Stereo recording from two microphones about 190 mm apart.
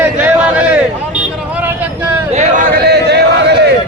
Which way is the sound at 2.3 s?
50° right (ahead or behind).